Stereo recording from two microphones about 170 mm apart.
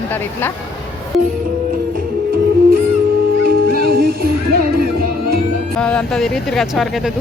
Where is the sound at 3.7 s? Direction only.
65° right (ahead or behind).